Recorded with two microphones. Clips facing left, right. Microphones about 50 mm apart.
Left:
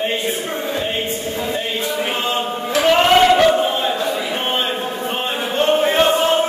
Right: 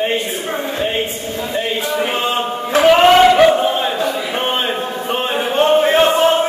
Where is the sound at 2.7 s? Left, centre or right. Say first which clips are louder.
Right 4 dB; centre.